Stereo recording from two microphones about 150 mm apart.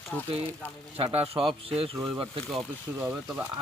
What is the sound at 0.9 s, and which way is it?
Speech, 40° right (ahead or behind).